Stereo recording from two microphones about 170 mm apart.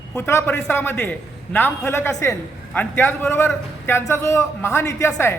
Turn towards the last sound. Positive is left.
turn(degrees=15)  # may be behind; listen again after turning